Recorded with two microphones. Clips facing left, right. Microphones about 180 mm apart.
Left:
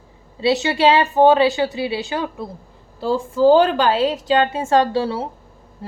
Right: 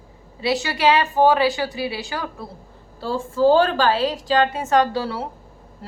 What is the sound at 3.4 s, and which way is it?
A woman's voice, 15° left (ahead or behind).